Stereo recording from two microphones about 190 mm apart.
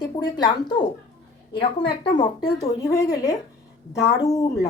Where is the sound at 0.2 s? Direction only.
20° left (ahead or behind).